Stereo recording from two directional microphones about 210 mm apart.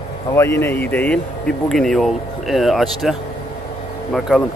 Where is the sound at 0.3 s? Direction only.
10° left (ahead or behind).